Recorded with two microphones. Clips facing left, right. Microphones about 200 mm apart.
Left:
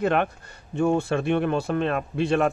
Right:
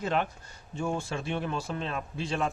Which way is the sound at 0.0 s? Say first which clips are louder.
Left 7 dB; 60° left (ahead or behind).